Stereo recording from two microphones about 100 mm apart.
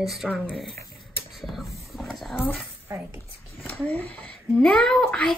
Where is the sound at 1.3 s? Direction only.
Centre (ahead or behind).